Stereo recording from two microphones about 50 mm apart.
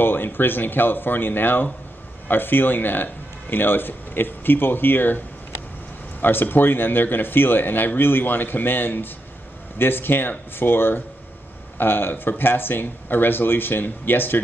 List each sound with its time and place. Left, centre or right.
0.0 s speech: left
6.2 s speech: left